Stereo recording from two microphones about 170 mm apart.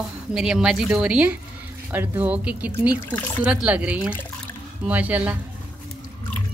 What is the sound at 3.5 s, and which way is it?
Speech, 5° right (ahead or behind).